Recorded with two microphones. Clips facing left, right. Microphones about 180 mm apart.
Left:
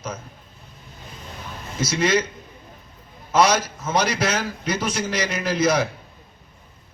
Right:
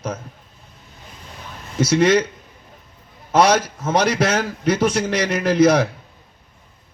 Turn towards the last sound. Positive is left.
turn(degrees=-60)  # may be behind; listen again after turning